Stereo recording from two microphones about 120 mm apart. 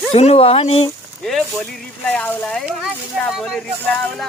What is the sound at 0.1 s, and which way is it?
Speech, 55° left (ahead or behind).